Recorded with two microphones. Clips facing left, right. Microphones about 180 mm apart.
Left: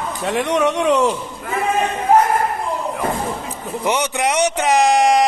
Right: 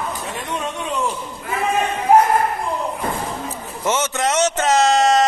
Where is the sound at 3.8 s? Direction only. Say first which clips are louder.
Left 1 dB; 15° left (ahead or behind).